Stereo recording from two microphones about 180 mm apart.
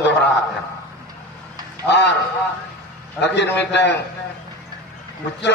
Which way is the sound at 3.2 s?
75° left (ahead or behind).